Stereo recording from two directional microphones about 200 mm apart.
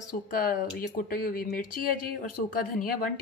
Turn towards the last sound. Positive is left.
turn(degrees=45)  # may be behind; listen again after turning